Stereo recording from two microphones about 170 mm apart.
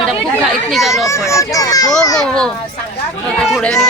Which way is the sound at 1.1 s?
15° left (ahead or behind).